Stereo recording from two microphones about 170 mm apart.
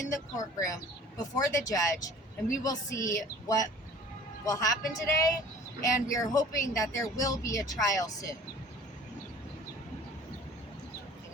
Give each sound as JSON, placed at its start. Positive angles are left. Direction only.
{"t": 0.1, "sound": "speech", "side_deg": 20}